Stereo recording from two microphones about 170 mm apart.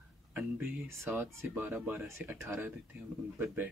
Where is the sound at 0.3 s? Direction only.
10° right (ahead or behind).